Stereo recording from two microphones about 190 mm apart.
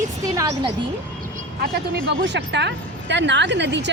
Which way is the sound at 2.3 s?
65° right (ahead or behind).